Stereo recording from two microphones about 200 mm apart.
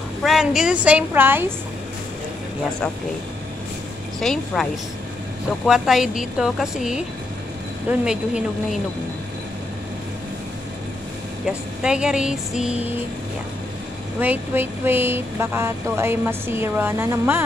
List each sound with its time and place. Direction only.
0.2 s speech: centre (ahead or behind)
4.2 s speech: centre (ahead or behind)
5.7 s speech: centre (ahead or behind)
11.4 s speech: 5° right (ahead or behind)
14.2 s speech: 10° right (ahead or behind)